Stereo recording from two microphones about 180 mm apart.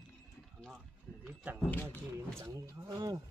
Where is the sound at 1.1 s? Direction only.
10° left (ahead or behind).